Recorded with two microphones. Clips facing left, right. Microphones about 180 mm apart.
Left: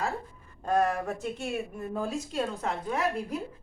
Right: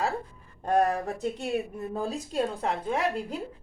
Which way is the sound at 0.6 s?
35° right (ahead or behind).